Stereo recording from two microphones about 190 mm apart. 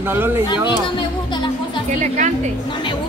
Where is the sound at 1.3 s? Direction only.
25° left (ahead or behind).